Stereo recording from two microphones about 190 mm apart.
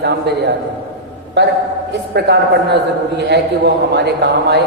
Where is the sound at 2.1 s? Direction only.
60° right (ahead or behind).